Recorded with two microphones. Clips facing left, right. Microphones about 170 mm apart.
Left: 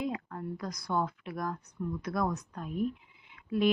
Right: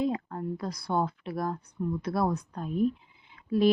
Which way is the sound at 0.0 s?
30° right (ahead or behind).